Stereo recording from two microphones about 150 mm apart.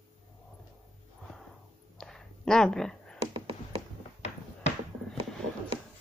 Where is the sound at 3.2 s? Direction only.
35° right (ahead or behind).